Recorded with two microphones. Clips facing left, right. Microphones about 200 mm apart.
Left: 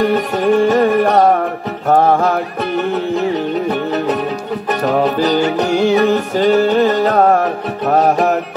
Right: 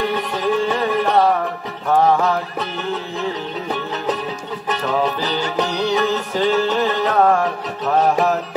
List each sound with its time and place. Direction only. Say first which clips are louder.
0.0 s music: left 6 dB; 55° left (ahead or behind)
2.1 s music: left 4 dB; 55° left (ahead or behind)
6.9 s music: left 4 dB; 40° left (ahead or behind)